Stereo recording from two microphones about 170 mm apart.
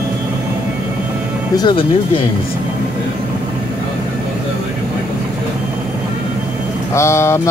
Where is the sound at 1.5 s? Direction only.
25° left (ahead or behind).